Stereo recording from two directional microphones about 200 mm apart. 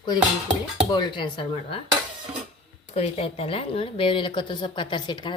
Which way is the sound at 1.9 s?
25° right (ahead or behind).